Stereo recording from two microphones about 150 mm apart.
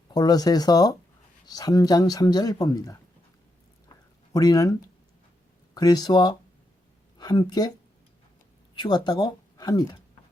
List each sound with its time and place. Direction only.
0.1 s speech: 25° left (ahead or behind)
4.3 s a woman's voice: 25° left (ahead or behind)
8.7 s speech: 30° left (ahead or behind)